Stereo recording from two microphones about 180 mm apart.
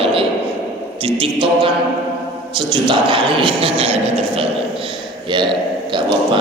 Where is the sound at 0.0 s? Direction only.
30° right (ahead or behind).